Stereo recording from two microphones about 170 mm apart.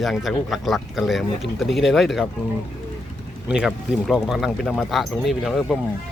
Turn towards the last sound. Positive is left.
turn(degrees=5)  # may be behind; listen again after turning